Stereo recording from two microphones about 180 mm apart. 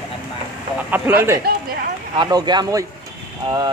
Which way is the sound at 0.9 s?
10° right (ahead or behind).